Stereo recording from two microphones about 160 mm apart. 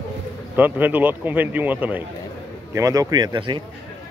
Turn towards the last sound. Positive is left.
turn(degrees=-30)  # may be behind; listen again after turning